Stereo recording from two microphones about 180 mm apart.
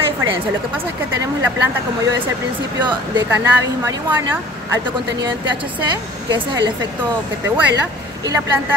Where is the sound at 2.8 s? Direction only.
25° right (ahead or behind).